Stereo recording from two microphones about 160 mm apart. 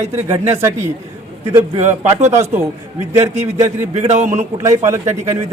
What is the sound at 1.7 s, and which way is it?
Speech, 45° right (ahead or behind).